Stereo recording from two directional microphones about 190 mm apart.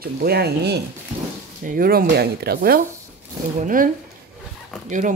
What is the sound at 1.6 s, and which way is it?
Speech, 50° right (ahead or behind).